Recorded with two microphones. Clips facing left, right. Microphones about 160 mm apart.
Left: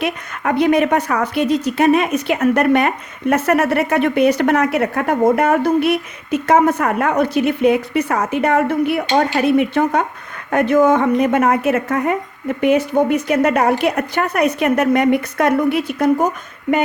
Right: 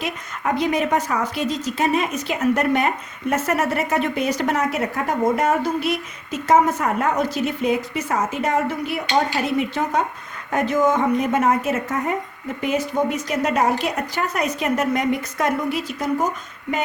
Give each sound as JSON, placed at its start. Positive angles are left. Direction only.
{"t": 0.0, "sound": "a woman's voice", "side_deg": 65}